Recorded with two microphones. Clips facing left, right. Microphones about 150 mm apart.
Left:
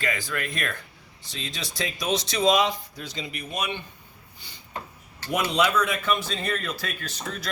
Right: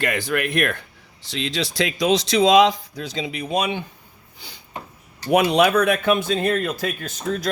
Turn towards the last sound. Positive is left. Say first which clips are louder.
# right 9 dB
turn(degrees=-50)  # may be behind; listen again after turning